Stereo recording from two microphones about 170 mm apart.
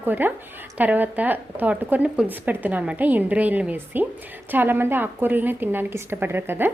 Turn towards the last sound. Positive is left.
turn(degrees=-10)  # may be behind; listen again after turning